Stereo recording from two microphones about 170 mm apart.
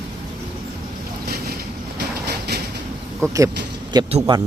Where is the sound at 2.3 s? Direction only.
70° right (ahead or behind).